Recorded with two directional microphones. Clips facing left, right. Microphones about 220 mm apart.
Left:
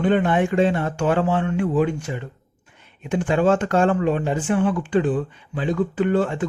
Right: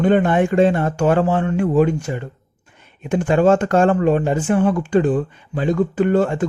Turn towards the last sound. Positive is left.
turn(degrees=-45)  # may be behind; listen again after turning